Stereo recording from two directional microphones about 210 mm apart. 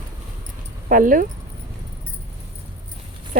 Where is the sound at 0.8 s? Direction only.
40° right (ahead or behind).